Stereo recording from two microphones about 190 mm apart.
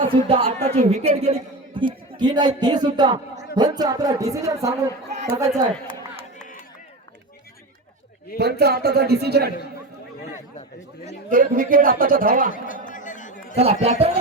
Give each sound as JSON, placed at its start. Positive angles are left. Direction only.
{"t": 0.1, "sound": "a woman's voice", "side_deg": -30}
{"t": 5.0, "sound": "chatter", "side_deg": -35}
{"t": 5.4, "sound": "a man's voice", "side_deg": -25}
{"t": 8.4, "sound": "speech", "side_deg": -60}
{"t": 11.3, "sound": "a man's voice", "side_deg": -45}
{"t": 12.6, "sound": "chatter", "side_deg": 45}
{"t": 13.6, "sound": "speech", "side_deg": -35}